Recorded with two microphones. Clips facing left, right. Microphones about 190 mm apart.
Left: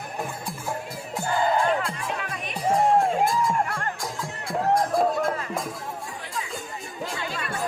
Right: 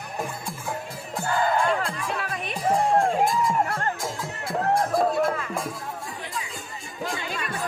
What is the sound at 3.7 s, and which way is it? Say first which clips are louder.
Music: right 3 dB; 30° right (ahead or behind).